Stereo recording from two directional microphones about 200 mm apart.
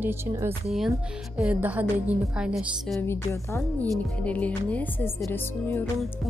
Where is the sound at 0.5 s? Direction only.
Centre (ahead or behind).